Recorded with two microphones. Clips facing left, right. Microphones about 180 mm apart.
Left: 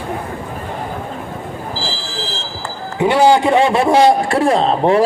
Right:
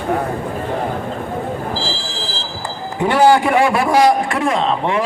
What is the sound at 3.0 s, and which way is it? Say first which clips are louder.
A man's voice: left 1 dB; 15° left (ahead or behind).